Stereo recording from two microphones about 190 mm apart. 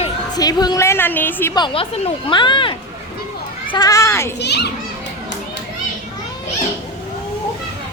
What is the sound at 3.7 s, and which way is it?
Speech, 20° left (ahead or behind).